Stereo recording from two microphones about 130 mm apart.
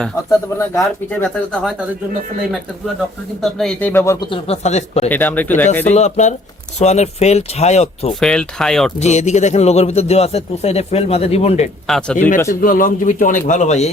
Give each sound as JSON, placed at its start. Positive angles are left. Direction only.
{"t": 0.3, "sound": "speech", "side_deg": 25}
{"t": 3.4, "sound": "speech", "side_deg": 5}
{"t": 4.3, "sound": "speech", "side_deg": 55}
{"t": 5.0, "sound": "speech", "side_deg": 15}
{"t": 5.9, "sound": "speech", "side_deg": 60}
{"t": 8.2, "sound": "speech", "side_deg": 5}
{"t": 9.0, "sound": "a man's voice", "side_deg": 60}
{"t": 11.9, "sound": "speech", "side_deg": 5}
{"t": 12.5, "sound": "a man's voice", "side_deg": 90}
{"t": 13.5, "sound": "speech", "side_deg": 65}